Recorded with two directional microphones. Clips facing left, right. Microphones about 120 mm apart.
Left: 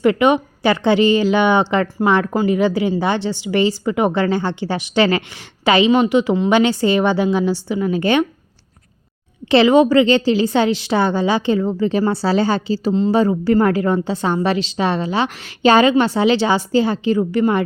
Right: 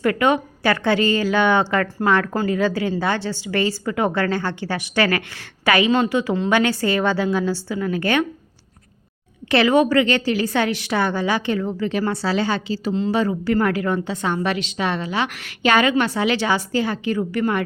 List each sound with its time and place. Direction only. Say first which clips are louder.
0.0 s a woman's voice: left 4 dB; 20° left (ahead or behind)
9.5 s a woman's voice: left 4 dB; 25° left (ahead or behind)